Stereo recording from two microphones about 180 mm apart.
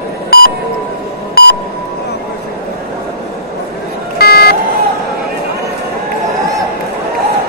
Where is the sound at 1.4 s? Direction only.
60° left (ahead or behind).